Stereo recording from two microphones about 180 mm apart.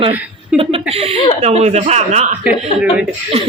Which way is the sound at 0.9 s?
35° right (ahead or behind).